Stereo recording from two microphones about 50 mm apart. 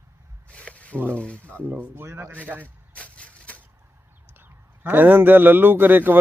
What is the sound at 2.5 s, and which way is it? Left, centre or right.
Speech, right.